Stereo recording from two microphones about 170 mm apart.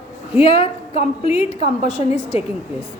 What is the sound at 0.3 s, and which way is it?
A woman's voice, 35° left (ahead or behind).